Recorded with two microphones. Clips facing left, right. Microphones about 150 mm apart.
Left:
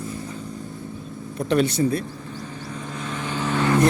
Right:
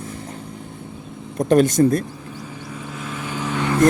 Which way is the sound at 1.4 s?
45° right (ahead or behind).